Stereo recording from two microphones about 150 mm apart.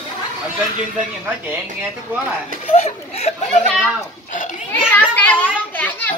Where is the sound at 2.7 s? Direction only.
45° left (ahead or behind).